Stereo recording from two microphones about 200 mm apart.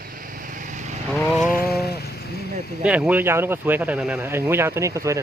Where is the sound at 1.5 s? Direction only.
50° left (ahead or behind).